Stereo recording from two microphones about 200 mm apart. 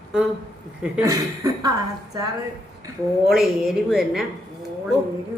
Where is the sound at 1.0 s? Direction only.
15° right (ahead or behind).